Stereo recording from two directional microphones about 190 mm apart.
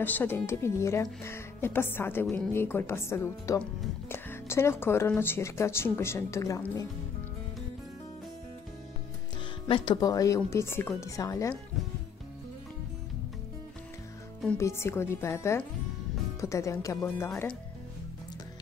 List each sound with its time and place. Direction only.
0.0 s speech: 10° left (ahead or behind)
9.7 s speech: 20° left (ahead or behind)
14.6 s speech: 15° left (ahead or behind)